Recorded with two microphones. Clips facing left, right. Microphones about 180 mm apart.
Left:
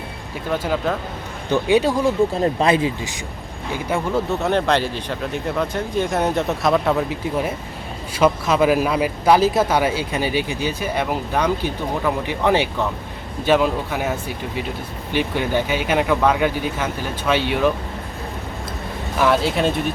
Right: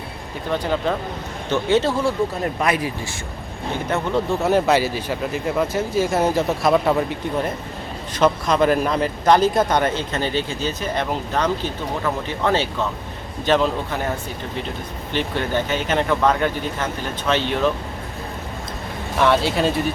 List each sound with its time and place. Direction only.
0.5 s speech: 5° left (ahead or behind)
2.4 s speech: 25° left (ahead or behind)
3.8 s speech: 5° left (ahead or behind)
19.2 s speech: centre (ahead or behind)